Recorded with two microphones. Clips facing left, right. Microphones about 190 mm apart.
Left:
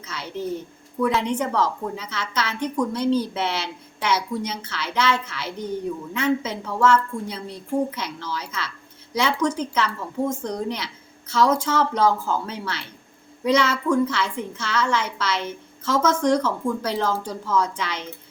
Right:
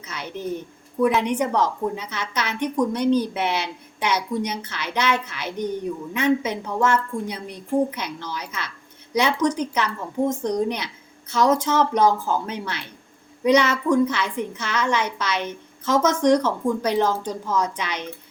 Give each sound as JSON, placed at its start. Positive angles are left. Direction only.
{"t": 0.0, "sound": "a woman's voice", "side_deg": -15}